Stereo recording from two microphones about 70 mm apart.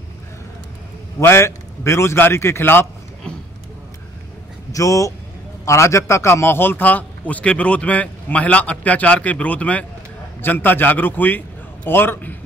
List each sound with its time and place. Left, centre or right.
1.2 s a man's voice: left
4.7 s a man's voice: left